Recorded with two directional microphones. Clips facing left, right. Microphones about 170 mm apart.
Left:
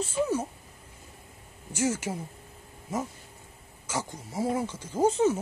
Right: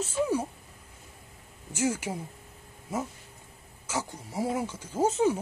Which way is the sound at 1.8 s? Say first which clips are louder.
Left 1 dB; 10° right (ahead or behind).